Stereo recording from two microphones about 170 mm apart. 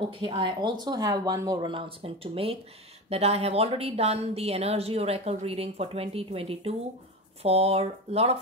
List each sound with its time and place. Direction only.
0.2 s a woman's voice: 30° right (ahead or behind)